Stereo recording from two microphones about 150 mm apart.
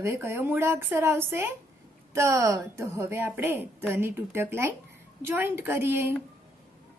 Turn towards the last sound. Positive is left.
turn(degrees=-15)  # may be behind; listen again after turning